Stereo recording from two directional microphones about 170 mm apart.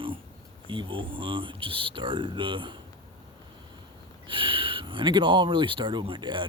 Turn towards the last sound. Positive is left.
turn(degrees=-25)  # may be behind; listen again after turning